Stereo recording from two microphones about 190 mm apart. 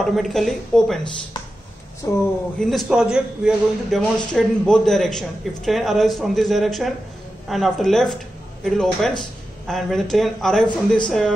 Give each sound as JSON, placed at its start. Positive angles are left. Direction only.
{"t": 0.0, "sound": "a man's voice", "side_deg": 0}
{"t": 2.0, "sound": "speech", "side_deg": 15}
{"t": 2.6, "sound": "a man's voice", "side_deg": 0}